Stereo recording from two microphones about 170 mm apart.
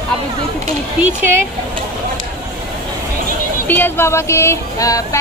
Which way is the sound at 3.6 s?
10° left (ahead or behind).